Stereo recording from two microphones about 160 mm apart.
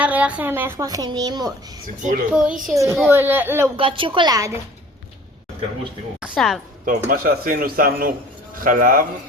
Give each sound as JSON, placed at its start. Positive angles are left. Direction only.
{"t": 0.0, "sound": "a woman's voice", "side_deg": -10}
{"t": 2.3, "sound": "a child's voice", "side_deg": -5}
{"t": 2.7, "sound": "a child's voice", "side_deg": -20}
{"t": 3.8, "sound": "a woman's voice", "side_deg": -35}
{"t": 6.3, "sound": "a child's voice", "side_deg": 0}
{"t": 6.8, "sound": "a man's voice", "side_deg": -65}